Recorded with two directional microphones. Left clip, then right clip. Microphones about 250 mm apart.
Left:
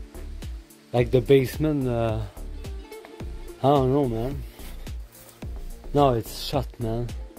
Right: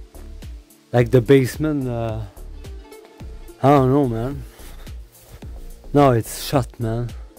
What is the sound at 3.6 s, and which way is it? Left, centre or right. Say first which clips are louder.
Speech: right 5 dB; right.